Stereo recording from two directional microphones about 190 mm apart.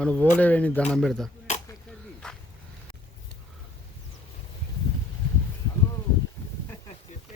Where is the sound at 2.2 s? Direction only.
5° left (ahead or behind).